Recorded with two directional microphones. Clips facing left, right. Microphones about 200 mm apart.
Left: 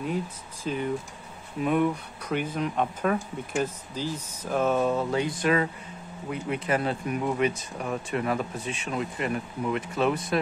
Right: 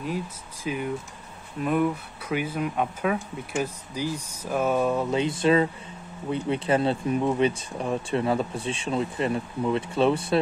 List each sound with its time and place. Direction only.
0.7 s speech: 5° right (ahead or behind)
5.0 s speech: 20° right (ahead or behind)